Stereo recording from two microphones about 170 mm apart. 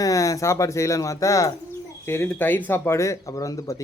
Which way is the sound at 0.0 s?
20° left (ahead or behind).